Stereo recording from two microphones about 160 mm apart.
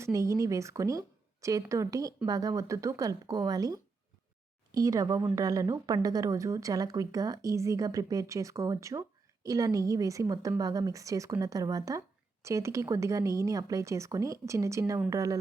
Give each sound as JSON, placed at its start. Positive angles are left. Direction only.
{"t": 0.0, "sound": "a woman's voice", "side_deg": -20}